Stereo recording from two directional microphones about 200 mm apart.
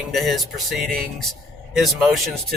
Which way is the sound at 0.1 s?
Centre (ahead or behind).